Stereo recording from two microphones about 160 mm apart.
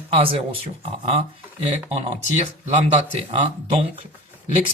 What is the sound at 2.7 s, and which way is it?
A man's voice, 45° right (ahead or behind).